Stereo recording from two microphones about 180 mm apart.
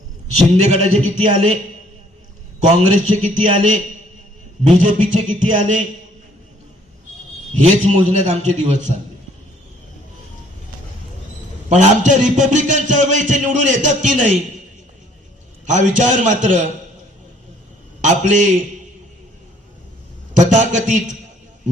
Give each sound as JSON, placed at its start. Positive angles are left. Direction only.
{"t": 0.3, "sound": "a man's voice", "side_deg": -35}
{"t": 2.6, "sound": "a man's voice", "side_deg": -40}
{"t": 4.8, "sound": "a man's voice", "side_deg": -40}
{"t": 7.5, "sound": "a man's voice", "side_deg": -40}
{"t": 11.7, "sound": "a man's voice", "side_deg": -40}
{"t": 15.6, "sound": "a man's voice", "side_deg": -45}
{"t": 18.0, "sound": "a man's voice", "side_deg": -45}
{"t": 20.4, "sound": "a man's voice", "side_deg": -45}